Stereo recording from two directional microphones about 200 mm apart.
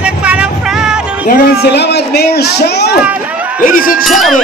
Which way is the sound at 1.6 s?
55° left (ahead or behind).